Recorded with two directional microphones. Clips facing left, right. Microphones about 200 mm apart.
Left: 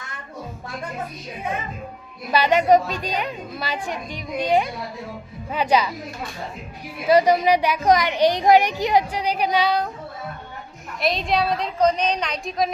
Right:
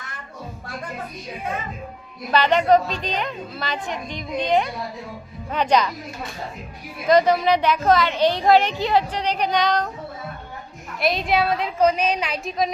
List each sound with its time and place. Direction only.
2.3 s a woman's voice: 10° left (ahead or behind)
7.1 s a woman's voice: 10° left (ahead or behind)
11.0 s a woman's voice: centre (ahead or behind)